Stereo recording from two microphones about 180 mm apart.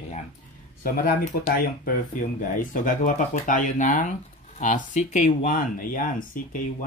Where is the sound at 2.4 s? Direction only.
50° left (ahead or behind).